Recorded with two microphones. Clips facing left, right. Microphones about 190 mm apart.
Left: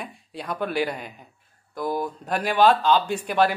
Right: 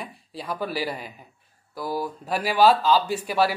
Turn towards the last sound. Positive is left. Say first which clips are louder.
# left 1 dB
turn(degrees=-5)  # may be behind; listen again after turning